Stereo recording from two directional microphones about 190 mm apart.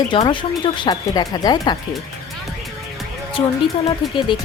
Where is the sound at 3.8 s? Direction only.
25° left (ahead or behind).